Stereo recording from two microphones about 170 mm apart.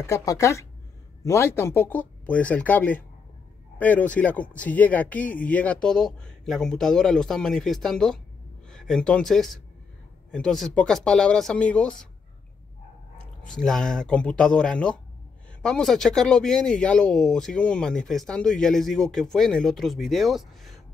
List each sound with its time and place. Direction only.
0.0 s speech: 20° left (ahead or behind)
13.5 s speech: 5° left (ahead or behind)